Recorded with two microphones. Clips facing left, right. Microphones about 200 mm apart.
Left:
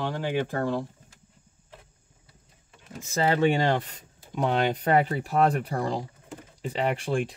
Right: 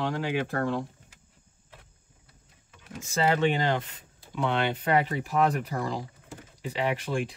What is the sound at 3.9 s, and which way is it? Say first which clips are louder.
Speech: left 2 dB; 40° left (ahead or behind).